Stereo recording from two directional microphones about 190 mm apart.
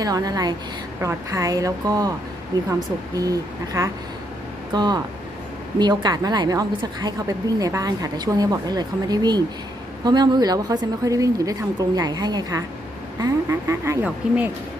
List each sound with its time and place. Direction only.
0.0 s a woman's voice: 20° right (ahead or behind)
3.2 s a woman's voice: 15° right (ahead or behind)